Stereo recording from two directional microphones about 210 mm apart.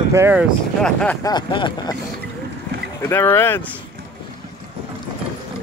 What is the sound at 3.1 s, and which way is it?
Speech, 10° left (ahead or behind).